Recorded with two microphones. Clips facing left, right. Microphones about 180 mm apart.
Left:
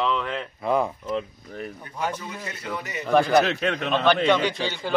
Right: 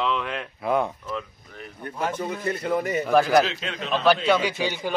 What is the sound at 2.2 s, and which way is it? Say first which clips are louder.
Speech: right 8 dB; 55° right (ahead or behind).